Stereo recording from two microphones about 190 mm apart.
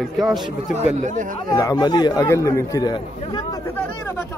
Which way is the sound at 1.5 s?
20° left (ahead or behind).